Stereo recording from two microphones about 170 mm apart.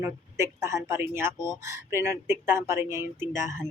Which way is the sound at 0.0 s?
15° right (ahead or behind).